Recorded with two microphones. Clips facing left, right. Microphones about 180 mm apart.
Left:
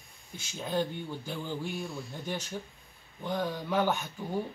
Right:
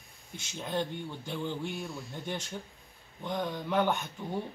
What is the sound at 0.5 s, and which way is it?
Speech, 10° left (ahead or behind).